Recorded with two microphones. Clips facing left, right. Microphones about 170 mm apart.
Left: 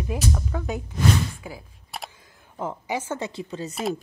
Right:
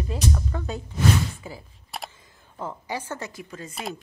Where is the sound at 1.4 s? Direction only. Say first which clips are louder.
Left 1 dB; 5° left (ahead or behind).